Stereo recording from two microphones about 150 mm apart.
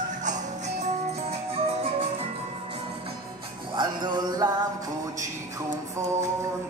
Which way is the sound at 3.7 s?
30° right (ahead or behind).